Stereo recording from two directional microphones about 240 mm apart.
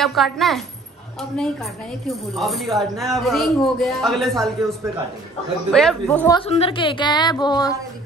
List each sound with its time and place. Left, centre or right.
0.0 s speech: centre
6.3 s a woman's voice: left